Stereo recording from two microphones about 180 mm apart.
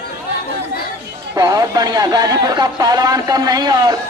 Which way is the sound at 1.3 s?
20° right (ahead or behind).